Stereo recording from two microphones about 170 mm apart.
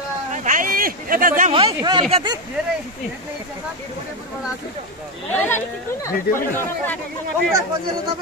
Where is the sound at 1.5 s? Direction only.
30° right (ahead or behind).